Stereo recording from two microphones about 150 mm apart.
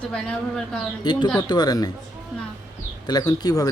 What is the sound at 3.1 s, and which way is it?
Speech, 25° left (ahead or behind).